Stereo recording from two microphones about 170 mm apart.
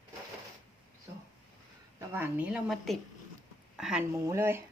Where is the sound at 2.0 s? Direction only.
10° right (ahead or behind).